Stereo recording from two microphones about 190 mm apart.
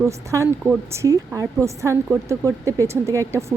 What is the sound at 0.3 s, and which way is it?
Speech, 15° right (ahead or behind).